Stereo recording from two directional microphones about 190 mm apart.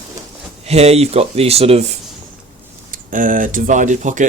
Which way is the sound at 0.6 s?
35° right (ahead or behind).